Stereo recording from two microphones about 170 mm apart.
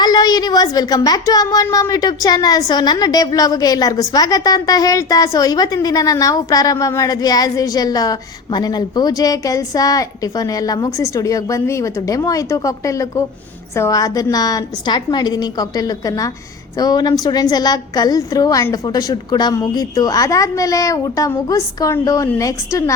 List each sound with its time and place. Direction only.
0.0 s a woman's voice: 25° left (ahead or behind)